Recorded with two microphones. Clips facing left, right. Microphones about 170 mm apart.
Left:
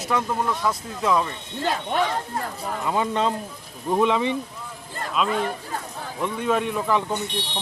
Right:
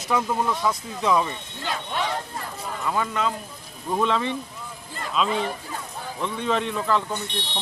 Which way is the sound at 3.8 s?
15° left (ahead or behind).